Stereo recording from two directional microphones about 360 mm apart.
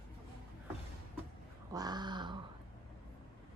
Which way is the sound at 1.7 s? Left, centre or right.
Centre.